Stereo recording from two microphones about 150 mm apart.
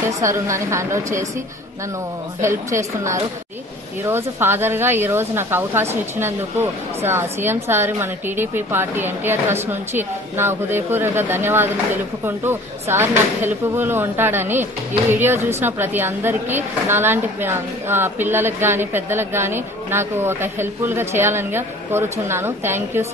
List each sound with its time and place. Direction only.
0.2 s a woman's voice: 20° right (ahead or behind)
2.4 s a woman's voice: 20° right (ahead or behind)